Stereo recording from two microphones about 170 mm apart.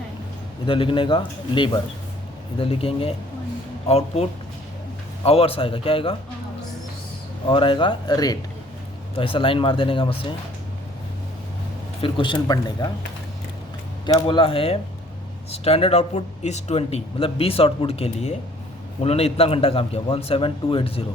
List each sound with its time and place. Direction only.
0.6 s a man's voice: 30° left (ahead or behind)
7.4 s a man's voice: 30° left (ahead or behind)
12.0 s a man's voice: 30° left (ahead or behind)
14.0 s speech: 30° left (ahead or behind)